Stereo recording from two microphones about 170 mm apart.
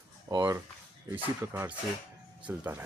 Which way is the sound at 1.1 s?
10° right (ahead or behind).